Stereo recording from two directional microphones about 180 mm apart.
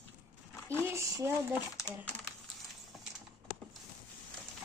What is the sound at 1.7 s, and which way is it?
Speech, 15° left (ahead or behind).